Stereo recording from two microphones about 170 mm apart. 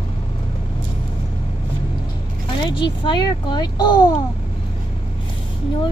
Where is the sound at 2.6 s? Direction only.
30° left (ahead or behind).